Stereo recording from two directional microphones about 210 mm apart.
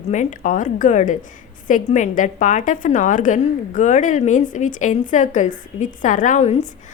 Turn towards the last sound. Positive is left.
turn(degrees=30)  # may be behind; listen again after turning